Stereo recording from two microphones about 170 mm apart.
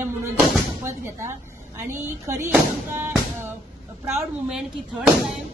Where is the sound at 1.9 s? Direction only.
15° right (ahead or behind).